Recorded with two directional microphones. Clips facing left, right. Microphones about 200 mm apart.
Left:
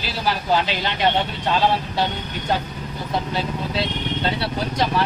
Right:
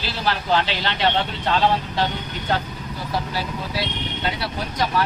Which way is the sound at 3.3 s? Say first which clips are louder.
Left 3 dB; 25° left (ahead or behind).